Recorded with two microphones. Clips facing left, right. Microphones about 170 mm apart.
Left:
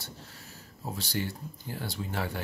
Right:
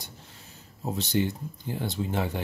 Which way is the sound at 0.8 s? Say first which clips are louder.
Right 7 dB; 20° right (ahead or behind).